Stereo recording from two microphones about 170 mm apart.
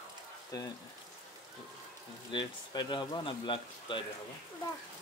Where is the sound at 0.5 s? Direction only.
20° left (ahead or behind).